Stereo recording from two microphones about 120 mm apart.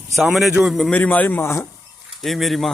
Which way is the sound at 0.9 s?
15° left (ahead or behind).